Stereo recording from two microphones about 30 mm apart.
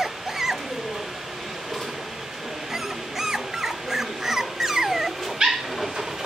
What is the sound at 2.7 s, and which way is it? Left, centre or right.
Dog, centre.